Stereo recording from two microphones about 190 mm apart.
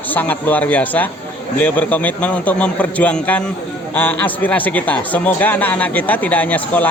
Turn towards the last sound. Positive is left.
turn(degrees=10)  # may be behind; listen again after turning